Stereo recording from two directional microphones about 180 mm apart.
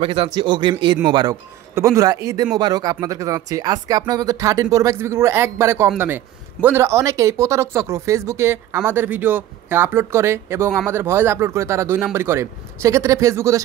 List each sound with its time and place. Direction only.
0.0 s speech: 30° right (ahead or behind)